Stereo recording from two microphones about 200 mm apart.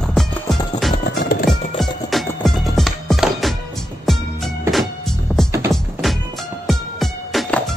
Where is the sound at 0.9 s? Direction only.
45° left (ahead or behind).